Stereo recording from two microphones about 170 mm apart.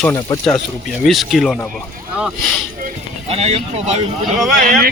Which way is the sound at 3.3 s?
35° right (ahead or behind).